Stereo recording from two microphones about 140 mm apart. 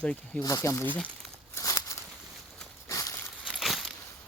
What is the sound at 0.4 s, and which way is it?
Speech, 20° left (ahead or behind).